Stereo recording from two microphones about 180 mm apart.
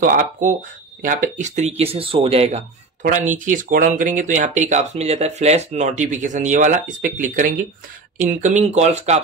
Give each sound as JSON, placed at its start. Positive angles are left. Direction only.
{"t": 0.0, "sound": "speech", "side_deg": -50}
{"t": 3.0, "sound": "speech", "side_deg": -45}